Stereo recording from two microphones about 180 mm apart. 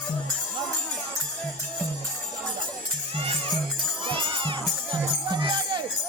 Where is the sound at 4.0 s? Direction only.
30° right (ahead or behind).